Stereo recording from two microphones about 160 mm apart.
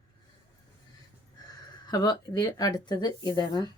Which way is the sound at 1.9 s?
25° left (ahead or behind).